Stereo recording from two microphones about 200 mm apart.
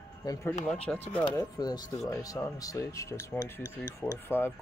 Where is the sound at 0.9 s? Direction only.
5° left (ahead or behind).